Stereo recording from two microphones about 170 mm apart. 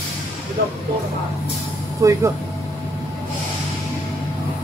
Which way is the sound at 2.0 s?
20° right (ahead or behind).